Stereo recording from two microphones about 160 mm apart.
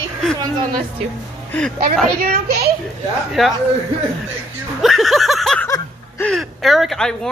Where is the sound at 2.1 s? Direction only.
75° right (ahead or behind).